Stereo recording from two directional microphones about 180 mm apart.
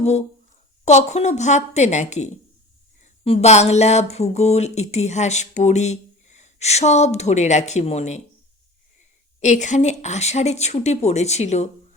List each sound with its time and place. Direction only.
0.0 s a woman's voice: 40° left (ahead or behind)
9.4 s speech: 40° left (ahead or behind)